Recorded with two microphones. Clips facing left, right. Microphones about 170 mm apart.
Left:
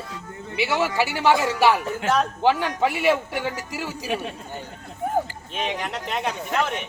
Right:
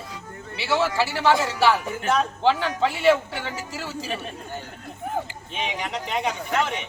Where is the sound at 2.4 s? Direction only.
15° left (ahead or behind).